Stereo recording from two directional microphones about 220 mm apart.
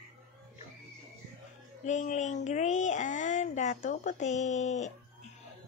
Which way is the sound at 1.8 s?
35° left (ahead or behind).